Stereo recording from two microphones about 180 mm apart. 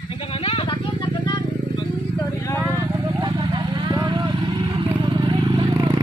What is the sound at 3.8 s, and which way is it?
Vehicle, 20° right (ahead or behind).